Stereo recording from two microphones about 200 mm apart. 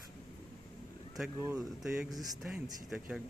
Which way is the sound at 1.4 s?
5° right (ahead or behind).